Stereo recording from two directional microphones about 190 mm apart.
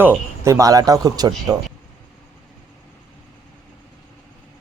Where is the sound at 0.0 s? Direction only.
10° right (ahead or behind).